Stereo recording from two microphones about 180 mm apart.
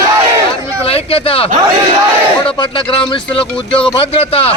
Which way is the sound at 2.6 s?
25° left (ahead or behind).